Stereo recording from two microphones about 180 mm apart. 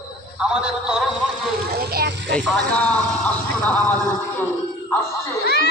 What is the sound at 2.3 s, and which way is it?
Speech, centre (ahead or behind).